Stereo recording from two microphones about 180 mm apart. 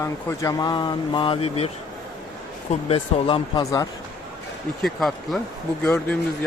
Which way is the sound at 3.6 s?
20° left (ahead or behind).